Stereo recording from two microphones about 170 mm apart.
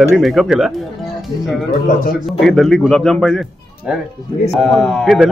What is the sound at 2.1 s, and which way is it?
A man's voice, centre (ahead or behind).